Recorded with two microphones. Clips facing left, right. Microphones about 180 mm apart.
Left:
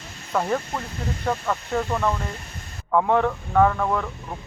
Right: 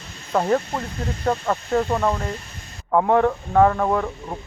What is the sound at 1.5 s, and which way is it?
Speech, 20° right (ahead or behind).